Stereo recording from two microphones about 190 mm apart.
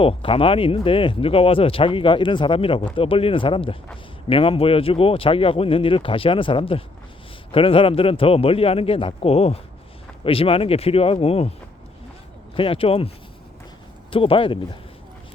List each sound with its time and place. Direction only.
0.0 s speech: 30° left (ahead or behind)
12.5 s speech: 30° left (ahead or behind)
14.1 s speech: 30° left (ahead or behind)